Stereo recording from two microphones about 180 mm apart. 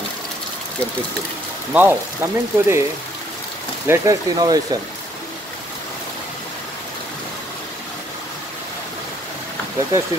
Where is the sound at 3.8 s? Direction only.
15° right (ahead or behind).